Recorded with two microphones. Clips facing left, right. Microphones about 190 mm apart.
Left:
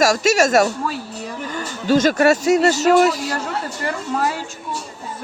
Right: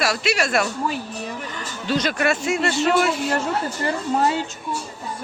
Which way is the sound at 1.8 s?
45° left (ahead or behind).